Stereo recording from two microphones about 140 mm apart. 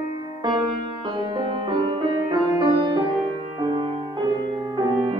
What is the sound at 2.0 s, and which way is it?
Music, 30° right (ahead or behind).